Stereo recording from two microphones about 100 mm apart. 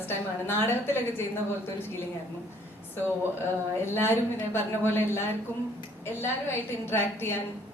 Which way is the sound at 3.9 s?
25° left (ahead or behind).